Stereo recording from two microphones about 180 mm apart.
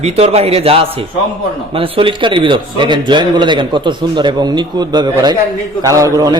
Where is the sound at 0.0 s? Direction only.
35° right (ahead or behind).